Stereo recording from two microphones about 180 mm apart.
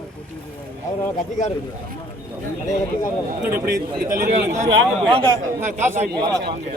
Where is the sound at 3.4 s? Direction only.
55° right (ahead or behind).